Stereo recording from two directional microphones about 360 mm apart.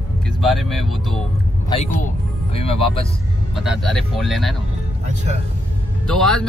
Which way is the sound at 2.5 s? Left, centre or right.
Centre.